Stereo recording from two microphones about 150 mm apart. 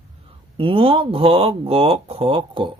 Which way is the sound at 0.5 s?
35° right (ahead or behind).